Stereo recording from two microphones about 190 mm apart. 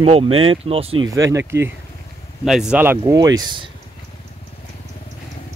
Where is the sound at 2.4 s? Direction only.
5° right (ahead or behind).